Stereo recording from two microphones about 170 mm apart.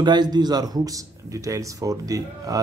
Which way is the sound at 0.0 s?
25° right (ahead or behind).